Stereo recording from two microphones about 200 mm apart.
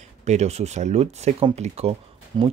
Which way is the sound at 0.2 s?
35° right (ahead or behind).